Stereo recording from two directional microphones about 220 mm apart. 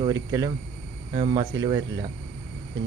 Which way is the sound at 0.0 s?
15° right (ahead or behind).